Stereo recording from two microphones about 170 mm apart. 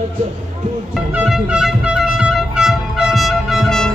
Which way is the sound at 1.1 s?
5° right (ahead or behind).